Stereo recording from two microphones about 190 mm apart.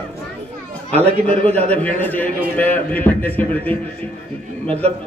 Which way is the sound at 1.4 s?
10° left (ahead or behind).